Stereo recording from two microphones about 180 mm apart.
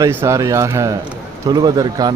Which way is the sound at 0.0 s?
15° right (ahead or behind).